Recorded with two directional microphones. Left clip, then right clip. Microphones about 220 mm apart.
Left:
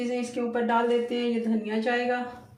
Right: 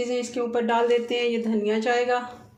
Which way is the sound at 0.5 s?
50° right (ahead or behind).